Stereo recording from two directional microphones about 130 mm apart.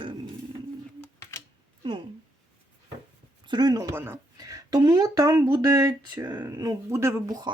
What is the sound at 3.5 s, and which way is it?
A woman's voice, 30° right (ahead or behind).